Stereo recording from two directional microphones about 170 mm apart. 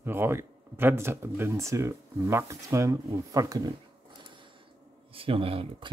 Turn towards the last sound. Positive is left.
turn(degrees=-35)  # may be behind; listen again after turning